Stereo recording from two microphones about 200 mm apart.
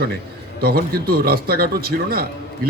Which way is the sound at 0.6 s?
50° right (ahead or behind).